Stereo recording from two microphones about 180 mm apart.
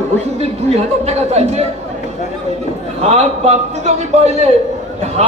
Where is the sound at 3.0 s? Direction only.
35° right (ahead or behind).